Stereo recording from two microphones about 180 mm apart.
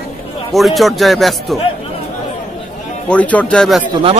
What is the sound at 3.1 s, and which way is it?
Speech, 10° left (ahead or behind).